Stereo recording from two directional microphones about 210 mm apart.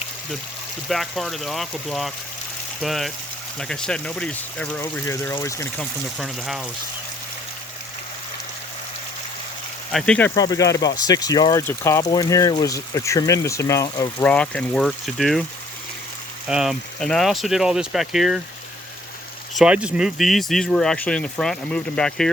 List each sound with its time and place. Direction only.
0.9 s speech: centre (ahead or behind)
9.9 s speech: 5° left (ahead or behind)
14.2 s speech: 5° left (ahead or behind)
16.5 s speech: centre (ahead or behind)
19.5 s speech: 5° right (ahead or behind)